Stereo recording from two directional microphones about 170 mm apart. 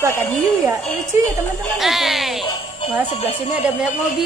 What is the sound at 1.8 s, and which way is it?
Speech, centre (ahead or behind).